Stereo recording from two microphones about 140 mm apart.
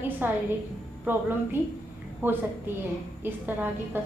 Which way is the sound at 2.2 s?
15° right (ahead or behind).